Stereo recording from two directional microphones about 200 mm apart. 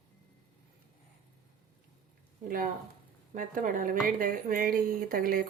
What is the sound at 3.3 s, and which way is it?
A woman's voice, 45° right (ahead or behind).